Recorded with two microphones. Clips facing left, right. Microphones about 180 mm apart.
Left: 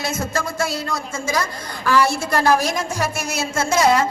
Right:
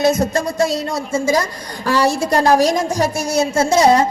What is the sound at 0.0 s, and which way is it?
A woman's voice, 20° right (ahead or behind).